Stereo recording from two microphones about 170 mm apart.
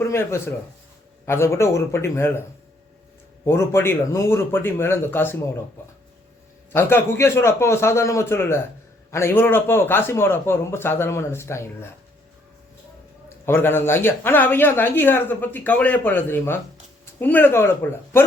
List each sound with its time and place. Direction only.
0.0 s speech: 15° left (ahead or behind)
3.4 s speech: 15° left (ahead or behind)
6.7 s speech: 15° left (ahead or behind)
13.4 s speech: 15° left (ahead or behind)